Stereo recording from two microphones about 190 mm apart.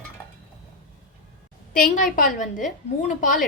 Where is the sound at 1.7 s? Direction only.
45° left (ahead or behind).